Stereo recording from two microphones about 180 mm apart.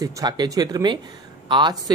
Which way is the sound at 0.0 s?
20° right (ahead or behind).